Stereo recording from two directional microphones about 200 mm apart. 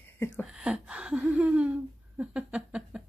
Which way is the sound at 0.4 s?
5° right (ahead or behind).